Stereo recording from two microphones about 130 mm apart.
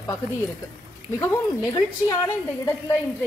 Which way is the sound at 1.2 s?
20° left (ahead or behind).